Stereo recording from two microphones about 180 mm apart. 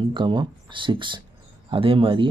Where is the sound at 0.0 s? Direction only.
25° right (ahead or behind).